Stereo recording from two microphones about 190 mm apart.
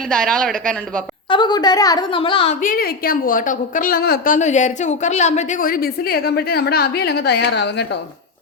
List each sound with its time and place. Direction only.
0.1 s speech: 5° left (ahead or behind)
1.3 s a woman's voice: 25° left (ahead or behind)
2.6 s a woman's voice: 45° left (ahead or behind)
4.4 s a woman's voice: 40° left (ahead or behind); by 7.9 s 60° left (ahead or behind)